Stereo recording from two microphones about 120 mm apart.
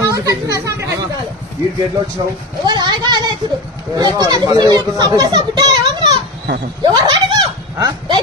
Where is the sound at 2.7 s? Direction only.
35° right (ahead or behind).